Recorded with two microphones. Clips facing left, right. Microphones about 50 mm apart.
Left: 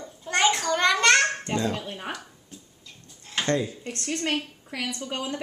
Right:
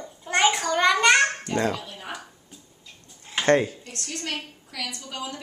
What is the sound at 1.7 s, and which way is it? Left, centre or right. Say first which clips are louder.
Speech: even; left.